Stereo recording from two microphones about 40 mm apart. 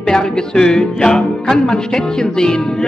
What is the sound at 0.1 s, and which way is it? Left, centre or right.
Music, centre.